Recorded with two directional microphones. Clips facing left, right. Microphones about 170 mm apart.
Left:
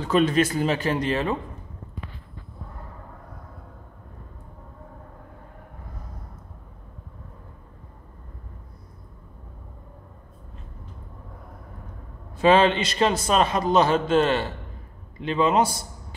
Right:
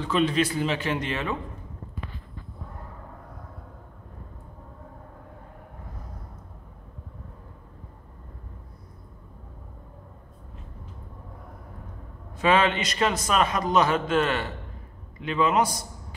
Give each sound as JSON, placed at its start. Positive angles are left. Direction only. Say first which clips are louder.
{"t": 0.0, "sound": "speech", "louder": "left 3 dB", "side_deg": 45}
{"t": 12.4, "sound": "a man's voice", "louder": "left 4 dB", "side_deg": 30}